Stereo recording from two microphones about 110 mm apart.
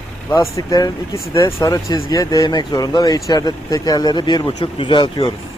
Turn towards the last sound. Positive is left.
turn(degrees=45)  # may be behind; listen again after turning